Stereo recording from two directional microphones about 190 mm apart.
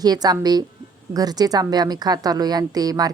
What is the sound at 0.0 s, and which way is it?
A woman's voice, 20° right (ahead or behind).